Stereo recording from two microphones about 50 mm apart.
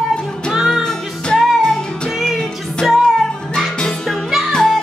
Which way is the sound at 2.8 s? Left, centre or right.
Centre.